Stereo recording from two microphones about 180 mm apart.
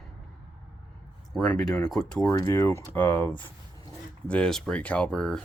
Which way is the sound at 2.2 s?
15° left (ahead or behind).